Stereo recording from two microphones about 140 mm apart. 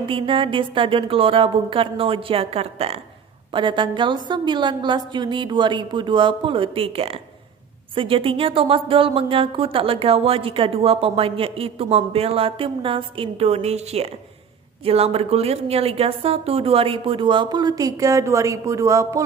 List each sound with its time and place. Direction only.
0.0 s speech: 40° right (ahead or behind); by 19.2 s 25° right (ahead or behind)